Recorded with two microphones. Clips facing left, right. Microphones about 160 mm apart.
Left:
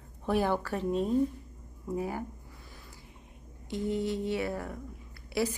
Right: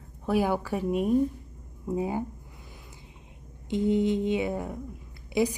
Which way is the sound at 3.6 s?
20° right (ahead or behind).